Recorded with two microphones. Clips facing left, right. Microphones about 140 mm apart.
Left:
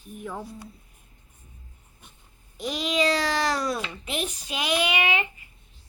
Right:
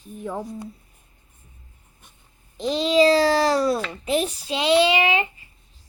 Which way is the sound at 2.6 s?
30° right (ahead or behind).